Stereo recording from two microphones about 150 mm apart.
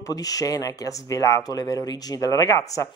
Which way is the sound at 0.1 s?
25° left (ahead or behind).